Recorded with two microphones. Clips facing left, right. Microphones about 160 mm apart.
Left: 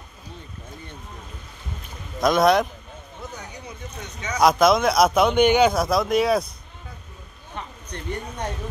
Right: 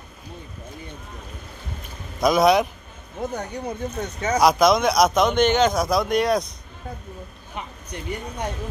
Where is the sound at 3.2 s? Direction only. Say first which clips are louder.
Right 11 dB; 55° right (ahead or behind).